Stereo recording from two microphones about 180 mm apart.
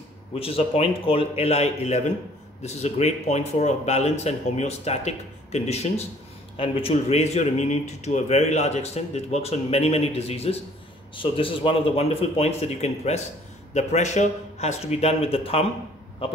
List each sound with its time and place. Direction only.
0.3 s speech: 30° left (ahead or behind)